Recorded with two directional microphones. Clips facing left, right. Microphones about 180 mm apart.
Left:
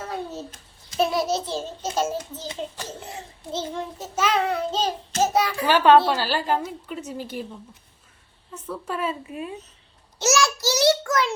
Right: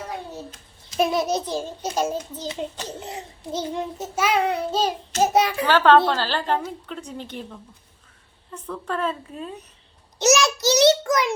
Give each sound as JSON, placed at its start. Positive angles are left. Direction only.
{"t": 0.9, "sound": "a child's voice", "side_deg": -15}
{"t": 5.6, "sound": "a woman's voice", "side_deg": 15}
{"t": 8.5, "sound": "a woman's voice", "side_deg": 5}
{"t": 10.2, "sound": "child singing", "side_deg": -20}